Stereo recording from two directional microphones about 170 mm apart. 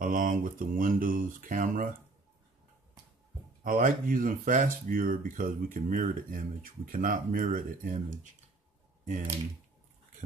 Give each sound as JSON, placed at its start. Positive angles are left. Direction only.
{"t": 0.0, "sound": "speech", "side_deg": -50}
{"t": 3.6, "sound": "speech", "side_deg": -55}